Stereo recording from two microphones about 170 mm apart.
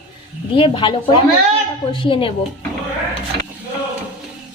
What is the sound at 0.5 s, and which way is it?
A woman's voice, 30° left (ahead or behind).